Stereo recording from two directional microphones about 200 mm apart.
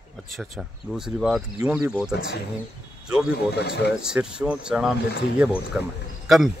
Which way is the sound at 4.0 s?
5° right (ahead or behind).